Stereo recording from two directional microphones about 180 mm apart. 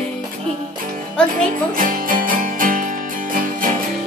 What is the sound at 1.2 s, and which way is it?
Music, 5° left (ahead or behind).